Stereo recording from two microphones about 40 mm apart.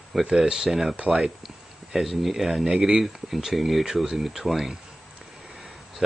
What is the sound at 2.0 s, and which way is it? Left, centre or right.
Speech, centre.